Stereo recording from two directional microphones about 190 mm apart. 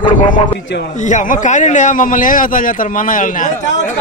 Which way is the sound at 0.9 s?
40° left (ahead or behind).